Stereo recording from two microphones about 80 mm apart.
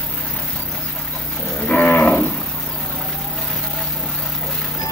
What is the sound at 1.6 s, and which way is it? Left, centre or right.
Livestock, centre.